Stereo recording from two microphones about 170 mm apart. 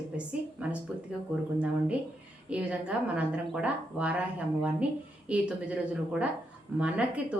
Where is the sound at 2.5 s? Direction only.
5° right (ahead or behind).